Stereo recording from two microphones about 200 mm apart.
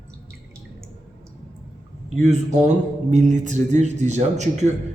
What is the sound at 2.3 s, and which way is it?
A man's voice, 35° right (ahead or behind).